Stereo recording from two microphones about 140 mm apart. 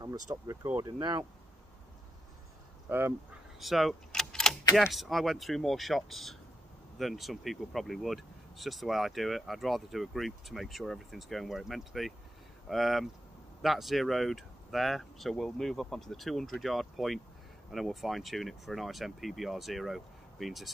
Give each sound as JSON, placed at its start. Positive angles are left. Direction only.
{"t": 0.3, "sound": "speech", "side_deg": -20}
{"t": 0.8, "sound": "speech", "side_deg": -30}
{"t": 2.9, "sound": "speech", "side_deg": -15}
{"t": 3.5, "sound": "keys jangling", "side_deg": 0}
{"t": 4.7, "sound": "speech", "side_deg": 0}